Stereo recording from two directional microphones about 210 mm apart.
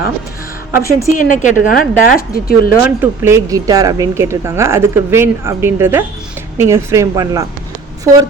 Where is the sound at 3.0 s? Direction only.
10° right (ahead or behind).